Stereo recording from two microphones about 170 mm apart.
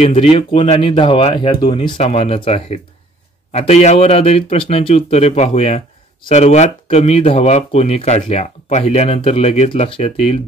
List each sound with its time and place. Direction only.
0.0 s speech: 35° left (ahead or behind)